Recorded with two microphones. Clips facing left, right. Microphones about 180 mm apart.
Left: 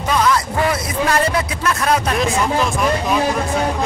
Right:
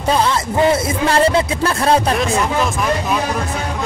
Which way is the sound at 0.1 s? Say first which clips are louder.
Right 1 dB; 30° right (ahead or behind).